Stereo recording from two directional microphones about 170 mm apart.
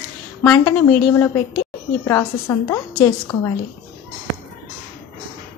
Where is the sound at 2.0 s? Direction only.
15° left (ahead or behind).